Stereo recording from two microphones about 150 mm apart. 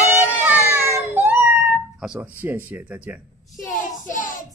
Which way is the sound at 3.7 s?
60° left (ahead or behind).